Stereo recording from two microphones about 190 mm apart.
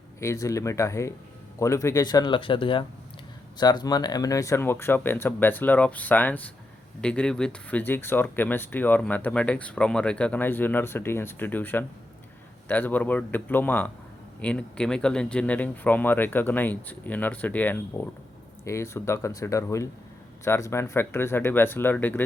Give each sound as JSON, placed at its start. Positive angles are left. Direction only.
{"t": 0.2, "sound": "speech", "side_deg": 15}